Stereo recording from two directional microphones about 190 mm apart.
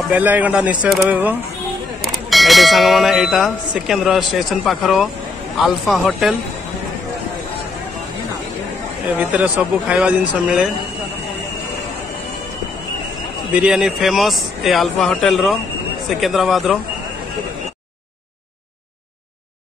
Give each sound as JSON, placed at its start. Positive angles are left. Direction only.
{"t": 0.1, "sound": "speech", "side_deg": -10}
{"t": 9.2, "sound": "speech", "side_deg": -10}
{"t": 13.5, "sound": "speech", "side_deg": -5}